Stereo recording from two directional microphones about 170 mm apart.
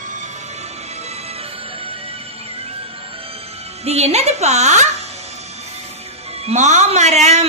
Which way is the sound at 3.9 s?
40° right (ahead or behind).